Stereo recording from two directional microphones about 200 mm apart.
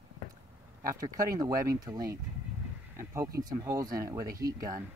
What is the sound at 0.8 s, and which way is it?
Speech, 15° right (ahead or behind).